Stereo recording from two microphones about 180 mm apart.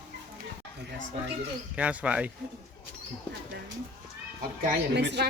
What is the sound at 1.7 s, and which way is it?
Speech, 5° right (ahead or behind).